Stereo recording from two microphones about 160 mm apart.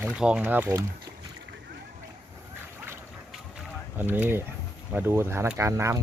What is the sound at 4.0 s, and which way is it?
Speech, 10° right (ahead or behind).